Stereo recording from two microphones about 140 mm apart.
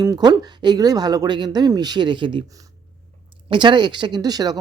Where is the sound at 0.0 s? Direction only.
25° right (ahead or behind).